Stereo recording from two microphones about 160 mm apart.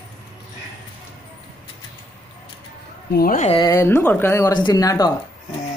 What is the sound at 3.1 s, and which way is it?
Speech, 70° left (ahead or behind).